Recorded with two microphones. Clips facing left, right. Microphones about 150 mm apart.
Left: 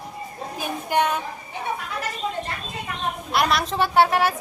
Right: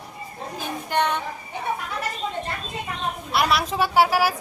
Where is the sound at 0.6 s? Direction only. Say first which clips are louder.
Left 2 dB; 10° left (ahead or behind).